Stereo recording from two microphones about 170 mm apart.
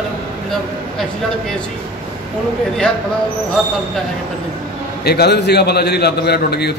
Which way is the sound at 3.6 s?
Centre (ahead or behind).